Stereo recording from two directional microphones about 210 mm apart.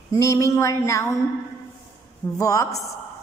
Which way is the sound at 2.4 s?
15° left (ahead or behind).